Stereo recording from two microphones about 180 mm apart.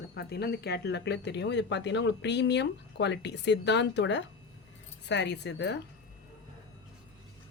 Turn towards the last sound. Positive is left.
turn(degrees=70)  # may be behind; listen again after turning